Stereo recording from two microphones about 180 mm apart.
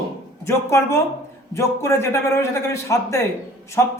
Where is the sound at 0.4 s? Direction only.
15° left (ahead or behind).